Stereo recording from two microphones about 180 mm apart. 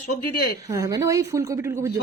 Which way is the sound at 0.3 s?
60° left (ahead or behind).